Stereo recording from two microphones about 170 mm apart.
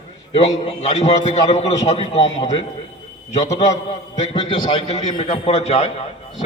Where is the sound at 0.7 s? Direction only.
40° left (ahead or behind).